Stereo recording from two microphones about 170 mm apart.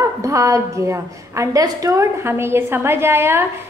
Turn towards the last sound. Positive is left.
turn(degrees=-15)  # may be behind; listen again after turning